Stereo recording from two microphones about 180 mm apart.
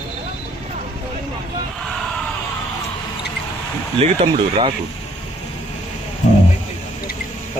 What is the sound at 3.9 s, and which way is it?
Speech, 30° right (ahead or behind).